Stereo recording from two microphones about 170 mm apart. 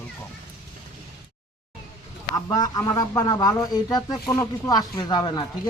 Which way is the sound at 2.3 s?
20° left (ahead or behind).